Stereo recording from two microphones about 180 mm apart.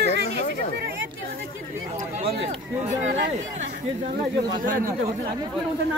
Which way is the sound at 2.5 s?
40° right (ahead or behind).